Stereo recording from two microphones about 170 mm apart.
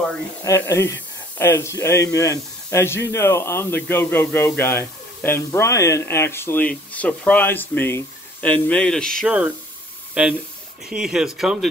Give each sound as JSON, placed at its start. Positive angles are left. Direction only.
{"t": 0.4, "sound": "speech", "side_deg": 15}
{"t": 10.9, "sound": "speech", "side_deg": -5}